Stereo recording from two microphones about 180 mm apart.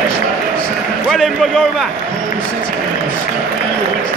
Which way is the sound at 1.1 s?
Centre (ahead or behind).